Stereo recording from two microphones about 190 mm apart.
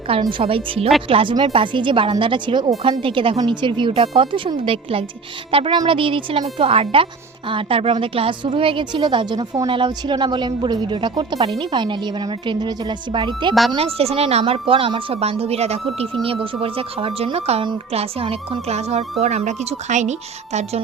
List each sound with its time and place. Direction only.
0.1 s speech: 25° right (ahead or behind)
13.5 s speech: centre (ahead or behind)
13.7 s a woman's voice: 30° right (ahead or behind)